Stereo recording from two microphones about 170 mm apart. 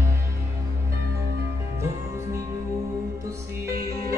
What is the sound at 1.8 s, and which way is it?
Music, 15° right (ahead or behind).